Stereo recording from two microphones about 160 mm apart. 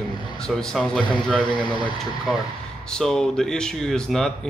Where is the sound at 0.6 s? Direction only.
5° left (ahead or behind).